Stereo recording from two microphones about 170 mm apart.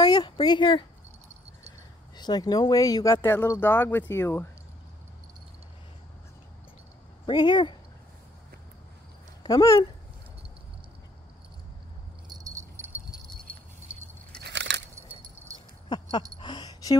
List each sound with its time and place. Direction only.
0.0 s speech: 25° left (ahead or behind)
2.1 s speech: 25° left (ahead or behind)
7.2 s speech: 25° left (ahead or behind)
9.4 s speech: 20° left (ahead or behind)
12.3 s wind chime: 20° right (ahead or behind)
14.4 s a sound: 90° right
15.0 s keys jangling: 15° right (ahead or behind)
15.9 s a sound: 30° left (ahead or behind)